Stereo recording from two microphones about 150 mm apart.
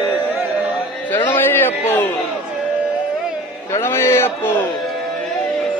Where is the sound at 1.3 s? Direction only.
15° left (ahead or behind).